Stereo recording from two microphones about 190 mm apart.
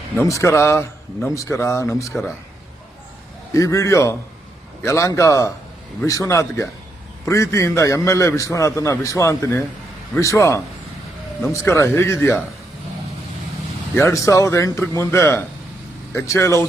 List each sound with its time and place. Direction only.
0.2 s a man's voice: 15° left (ahead or behind)
3.5 s a man's voice: 15° left (ahead or behind)
13.9 s a man's voice: 15° left (ahead or behind)